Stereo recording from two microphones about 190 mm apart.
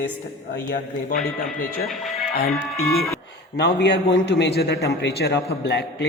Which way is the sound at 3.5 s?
65° left (ahead or behind).